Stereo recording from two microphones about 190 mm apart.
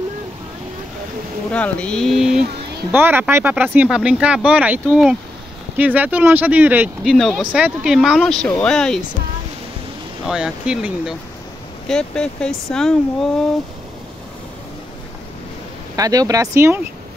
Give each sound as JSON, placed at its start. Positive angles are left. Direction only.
{"t": 1.5, "sound": "speech", "side_deg": 5}
{"t": 10.2, "sound": "speech", "side_deg": -5}
{"t": 16.0, "sound": "speech", "side_deg": -20}